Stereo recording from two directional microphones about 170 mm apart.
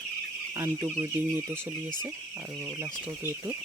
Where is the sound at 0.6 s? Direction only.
15° right (ahead or behind).